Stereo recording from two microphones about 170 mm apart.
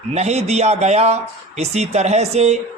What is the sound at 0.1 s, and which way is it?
A man's voice, 40° right (ahead or behind).